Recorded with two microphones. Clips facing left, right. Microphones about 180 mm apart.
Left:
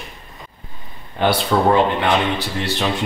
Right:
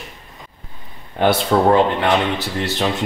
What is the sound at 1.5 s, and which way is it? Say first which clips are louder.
Speech: right 2 dB; 40° right (ahead or behind).